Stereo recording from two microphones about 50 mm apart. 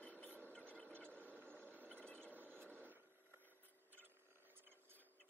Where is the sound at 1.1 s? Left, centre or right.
Left.